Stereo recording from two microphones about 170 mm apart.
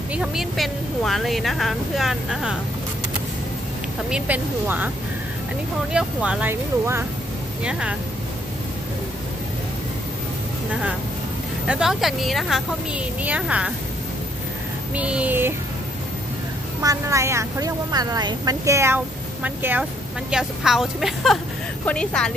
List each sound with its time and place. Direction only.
0.1 s speech: 5° right (ahead or behind)
4.1 s speech: 10° right (ahead or behind)
5.9 s speech: 5° right (ahead or behind)
11.6 s speech: 5° right (ahead or behind)
15.0 s speech: 5° right (ahead or behind)
16.8 s a woman's voice: 20° right (ahead or behind); by 22.3 s 5° left (ahead or behind)